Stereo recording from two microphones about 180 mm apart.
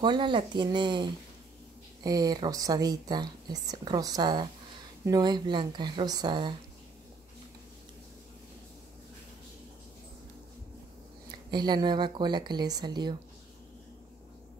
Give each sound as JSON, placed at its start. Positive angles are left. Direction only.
{"t": 0.0, "sound": "speech", "side_deg": -25}
{"t": 11.5, "sound": "speech", "side_deg": -25}